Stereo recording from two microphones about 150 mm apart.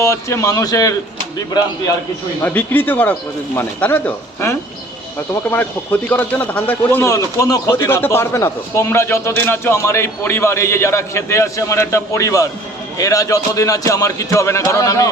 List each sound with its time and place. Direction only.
0.0 s a man's voice: 20° left (ahead or behind)
2.4 s a man's voice: 10° left (ahead or behind)